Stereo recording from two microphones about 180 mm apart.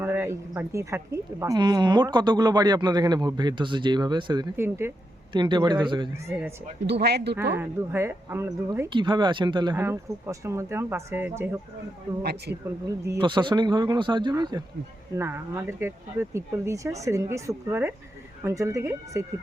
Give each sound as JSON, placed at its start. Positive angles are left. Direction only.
{"t": 0.0, "sound": "speech", "side_deg": -15}
{"t": 4.5, "sound": "speech", "side_deg": -15}
{"t": 5.3, "sound": "speech", "side_deg": -25}
{"t": 6.8, "sound": "speech", "side_deg": -65}
{"t": 7.5, "sound": "speech", "side_deg": -10}
{"t": 8.9, "sound": "speech", "side_deg": -25}
{"t": 9.7, "sound": "speech", "side_deg": -15}
{"t": 12.2, "sound": "speech", "side_deg": -65}
{"t": 12.9, "sound": "speech", "side_deg": -20}